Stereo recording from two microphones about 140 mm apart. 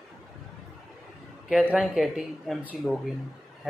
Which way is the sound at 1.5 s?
10° right (ahead or behind).